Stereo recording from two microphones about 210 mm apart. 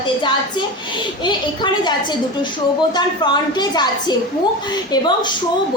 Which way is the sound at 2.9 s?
20° left (ahead or behind).